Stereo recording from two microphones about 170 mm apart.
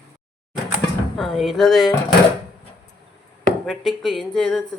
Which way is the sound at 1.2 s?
Centre (ahead or behind).